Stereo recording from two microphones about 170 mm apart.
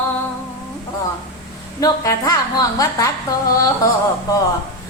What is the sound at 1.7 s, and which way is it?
Female singing, 20° left (ahead or behind).